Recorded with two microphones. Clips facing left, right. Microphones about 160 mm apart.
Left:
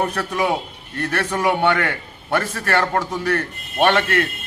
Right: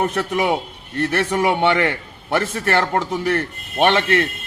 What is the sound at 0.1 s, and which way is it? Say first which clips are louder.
A man's voice: right 2 dB; 20° right (ahead or behind).